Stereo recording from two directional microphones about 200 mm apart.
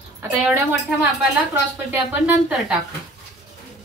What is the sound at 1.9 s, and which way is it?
Speech, 5° right (ahead or behind).